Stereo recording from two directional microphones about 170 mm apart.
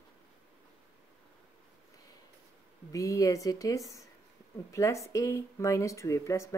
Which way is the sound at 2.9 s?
20° left (ahead or behind).